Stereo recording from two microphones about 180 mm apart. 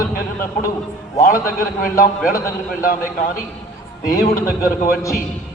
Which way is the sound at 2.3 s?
15° left (ahead or behind).